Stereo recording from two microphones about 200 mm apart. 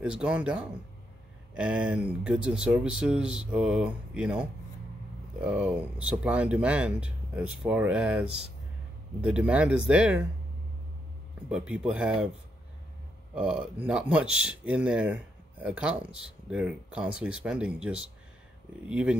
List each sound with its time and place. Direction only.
0.0 s speech: 5° right (ahead or behind)
11.4 s speech: 5° right (ahead or behind)
13.3 s speech: 5° right (ahead or behind)